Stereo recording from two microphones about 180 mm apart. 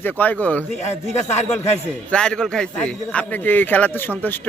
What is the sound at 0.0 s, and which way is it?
Speech, 10° left (ahead or behind).